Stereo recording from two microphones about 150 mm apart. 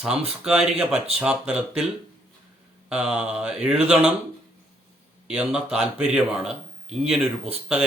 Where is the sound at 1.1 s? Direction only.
5° right (ahead or behind).